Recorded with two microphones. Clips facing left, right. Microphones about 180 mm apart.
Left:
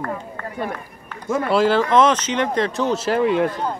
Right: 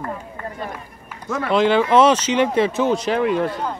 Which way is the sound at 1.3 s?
5° left (ahead or behind).